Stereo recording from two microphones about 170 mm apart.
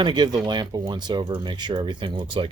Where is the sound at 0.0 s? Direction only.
25° right (ahead or behind).